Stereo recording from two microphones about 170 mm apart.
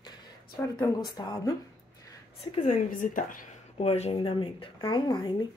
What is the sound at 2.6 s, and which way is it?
Speech, 50° left (ahead or behind).